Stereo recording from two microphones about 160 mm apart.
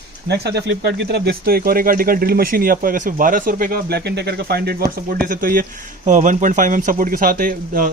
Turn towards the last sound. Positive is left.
turn(degrees=-55)  # may be behind; listen again after turning